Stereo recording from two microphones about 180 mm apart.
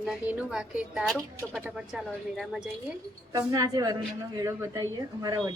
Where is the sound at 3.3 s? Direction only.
20° right (ahead or behind).